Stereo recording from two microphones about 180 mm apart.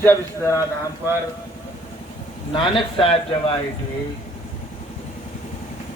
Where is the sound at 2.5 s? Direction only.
30° left (ahead or behind).